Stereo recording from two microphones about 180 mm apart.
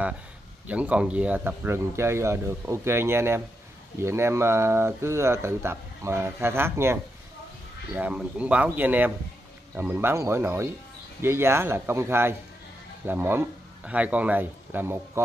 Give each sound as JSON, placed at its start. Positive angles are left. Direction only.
{"t": 0.7, "sound": "speech", "side_deg": -5}